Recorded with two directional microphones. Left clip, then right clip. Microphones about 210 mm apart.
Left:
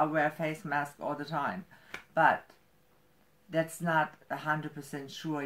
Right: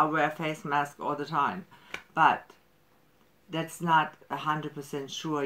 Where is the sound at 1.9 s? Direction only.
20° right (ahead or behind).